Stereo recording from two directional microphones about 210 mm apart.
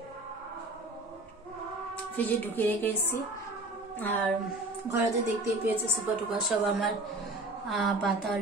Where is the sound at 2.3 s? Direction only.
10° left (ahead or behind).